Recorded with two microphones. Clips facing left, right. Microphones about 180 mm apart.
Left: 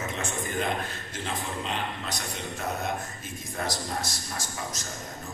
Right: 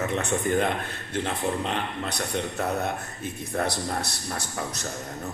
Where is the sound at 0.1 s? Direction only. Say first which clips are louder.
Right 7 dB; 60° right (ahead or behind).